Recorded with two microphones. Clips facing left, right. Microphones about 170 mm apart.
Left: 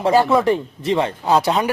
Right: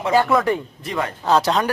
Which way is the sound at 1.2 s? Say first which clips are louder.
Right 2 dB; 15° left (ahead or behind).